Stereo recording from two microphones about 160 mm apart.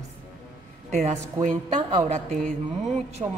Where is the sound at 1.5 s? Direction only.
25° right (ahead or behind).